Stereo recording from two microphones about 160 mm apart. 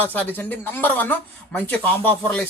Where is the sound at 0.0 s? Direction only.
10° left (ahead or behind).